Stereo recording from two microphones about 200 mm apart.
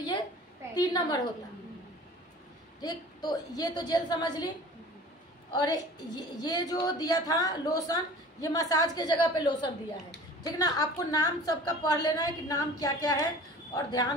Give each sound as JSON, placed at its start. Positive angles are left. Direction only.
{"t": 0.7, "sound": "a woman's voice", "side_deg": 20}
{"t": 2.8, "sound": "a woman's voice", "side_deg": 20}
{"t": 5.5, "sound": "a woman's voice", "side_deg": 20}